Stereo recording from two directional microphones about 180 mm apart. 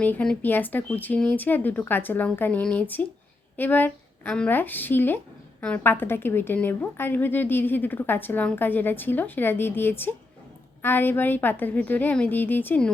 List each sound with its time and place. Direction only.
0.0 s speech: 5° left (ahead or behind)